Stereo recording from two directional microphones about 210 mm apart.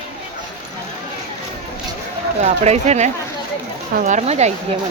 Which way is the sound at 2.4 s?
30° right (ahead or behind).